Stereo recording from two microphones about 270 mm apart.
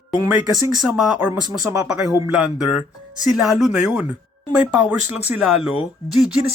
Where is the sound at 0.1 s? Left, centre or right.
Centre.